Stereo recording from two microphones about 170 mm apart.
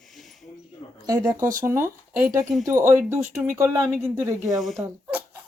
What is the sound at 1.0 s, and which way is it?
Speech, 20° right (ahead or behind).